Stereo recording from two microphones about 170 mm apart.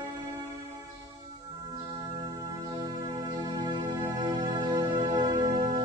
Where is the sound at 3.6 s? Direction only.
20° right (ahead or behind).